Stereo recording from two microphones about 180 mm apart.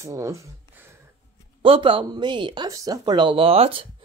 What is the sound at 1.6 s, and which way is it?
Speech, 30° right (ahead or behind).